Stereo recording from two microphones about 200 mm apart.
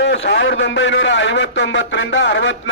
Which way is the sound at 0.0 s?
60° left (ahead or behind).